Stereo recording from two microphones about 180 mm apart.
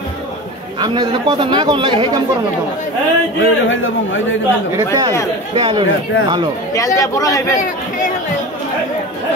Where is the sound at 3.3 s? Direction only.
90° left.